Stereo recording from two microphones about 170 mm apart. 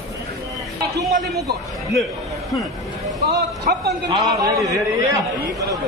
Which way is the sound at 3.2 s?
65° right (ahead or behind).